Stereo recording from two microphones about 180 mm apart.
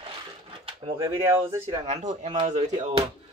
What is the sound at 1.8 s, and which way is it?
Speech, 40° right (ahead or behind).